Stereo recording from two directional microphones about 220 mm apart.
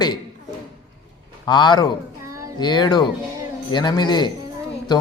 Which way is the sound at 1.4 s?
20° left (ahead or behind).